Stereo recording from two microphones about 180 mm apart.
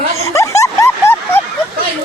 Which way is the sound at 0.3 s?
15° left (ahead or behind).